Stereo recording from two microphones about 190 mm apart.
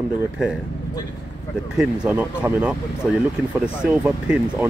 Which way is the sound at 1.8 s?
5° right (ahead or behind).